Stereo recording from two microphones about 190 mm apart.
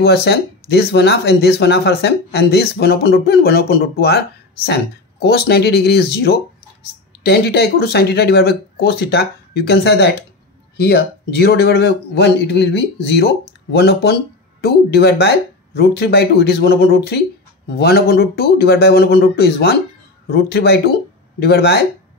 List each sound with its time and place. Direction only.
0.0 s speech: 55° left (ahead or behind)
5.2 s speech: 55° left (ahead or behind)